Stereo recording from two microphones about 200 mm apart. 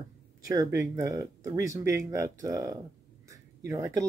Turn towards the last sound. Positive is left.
turn(degrees=-15)  # may be behind; listen again after turning